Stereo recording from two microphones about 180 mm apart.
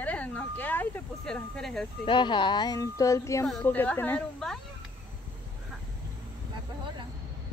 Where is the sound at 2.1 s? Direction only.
25° left (ahead or behind).